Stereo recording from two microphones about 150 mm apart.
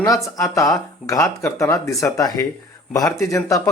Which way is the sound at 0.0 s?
20° left (ahead or behind).